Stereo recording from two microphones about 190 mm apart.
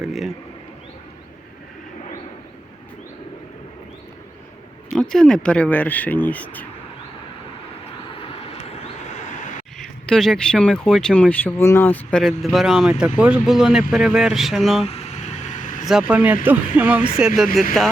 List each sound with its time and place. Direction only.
0.0 s speech: centre (ahead or behind)
4.9 s speech: 5° left (ahead or behind)
8.2 s vehicle: 30° left (ahead or behind)
9.7 s speech: 5° left (ahead or behind)
14.8 s vehicle: 35° left (ahead or behind)
15.9 s speech: 5° right (ahead or behind)